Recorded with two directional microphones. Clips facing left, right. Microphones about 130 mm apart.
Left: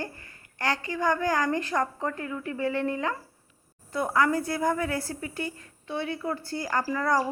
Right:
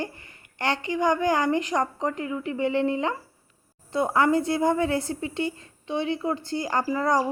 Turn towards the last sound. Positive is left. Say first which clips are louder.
# right 2 dB
turn(degrees=-20)  # may be behind; listen again after turning